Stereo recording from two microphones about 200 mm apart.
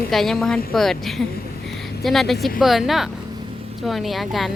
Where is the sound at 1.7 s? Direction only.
Centre (ahead or behind).